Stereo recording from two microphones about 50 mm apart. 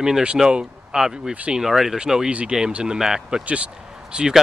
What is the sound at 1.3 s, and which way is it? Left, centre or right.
Speech, right.